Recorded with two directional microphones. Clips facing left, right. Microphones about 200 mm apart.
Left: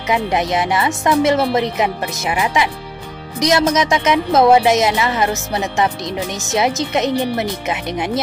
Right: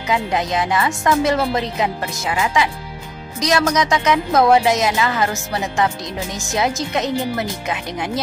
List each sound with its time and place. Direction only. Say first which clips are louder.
0.1 s speech: left 2 dB; 20° left (ahead or behind)